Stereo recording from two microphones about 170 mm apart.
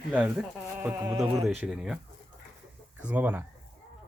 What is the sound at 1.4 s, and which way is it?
Speech, centre (ahead or behind).